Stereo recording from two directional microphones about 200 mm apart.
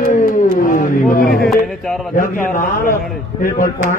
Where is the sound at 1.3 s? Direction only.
Centre (ahead or behind).